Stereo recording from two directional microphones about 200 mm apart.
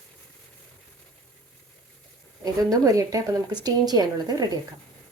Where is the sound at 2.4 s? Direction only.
15° right (ahead or behind).